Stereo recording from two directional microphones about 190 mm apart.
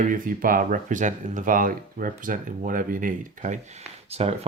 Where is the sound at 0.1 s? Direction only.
45° right (ahead or behind).